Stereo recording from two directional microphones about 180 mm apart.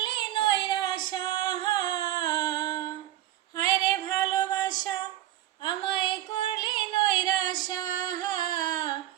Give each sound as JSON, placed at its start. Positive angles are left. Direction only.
{"t": 0.0, "sound": "female singing", "side_deg": 25}
{"t": 5.6, "sound": "music", "side_deg": 25}